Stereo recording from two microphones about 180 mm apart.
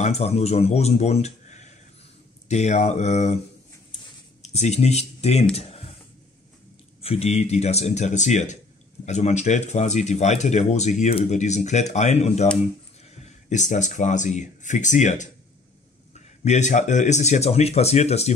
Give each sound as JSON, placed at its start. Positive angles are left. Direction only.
{"t": 0.0, "sound": "speech", "side_deg": 35}
{"t": 4.4, "sound": "speech", "side_deg": 40}
{"t": 5.6, "sound": "a sound", "side_deg": 35}
{"t": 7.0, "sound": "speech", "side_deg": 35}
{"t": 16.4, "sound": "speech", "side_deg": 40}